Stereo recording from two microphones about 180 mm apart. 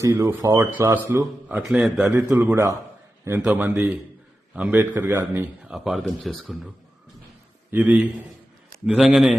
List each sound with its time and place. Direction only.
0.0 s a man's voice: 15° right (ahead or behind)
7.7 s a man's voice: 10° right (ahead or behind)